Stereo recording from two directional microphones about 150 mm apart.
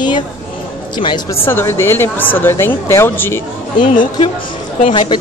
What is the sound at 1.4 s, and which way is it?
A woman's voice, 15° left (ahead or behind).